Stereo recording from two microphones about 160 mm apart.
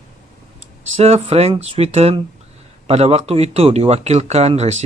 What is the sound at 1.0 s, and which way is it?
A man's voice, 40° right (ahead or behind).